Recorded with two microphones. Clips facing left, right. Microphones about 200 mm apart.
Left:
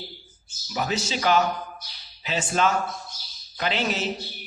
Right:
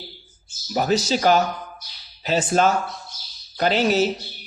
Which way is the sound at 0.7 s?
40° right (ahead or behind).